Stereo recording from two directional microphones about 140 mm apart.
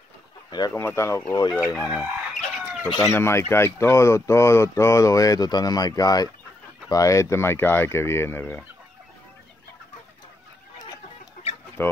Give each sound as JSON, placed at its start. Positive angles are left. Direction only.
{"t": 0.5, "sound": "speech", "side_deg": 25}
{"t": 2.0, "sound": "chicken", "side_deg": 5}
{"t": 3.1, "sound": "speech", "side_deg": 20}
{"t": 11.8, "sound": "speech", "side_deg": 15}